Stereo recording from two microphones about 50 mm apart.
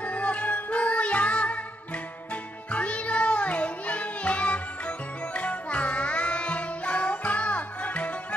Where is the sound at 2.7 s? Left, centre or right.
Left.